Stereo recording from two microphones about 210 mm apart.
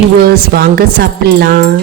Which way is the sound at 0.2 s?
50° right (ahead or behind).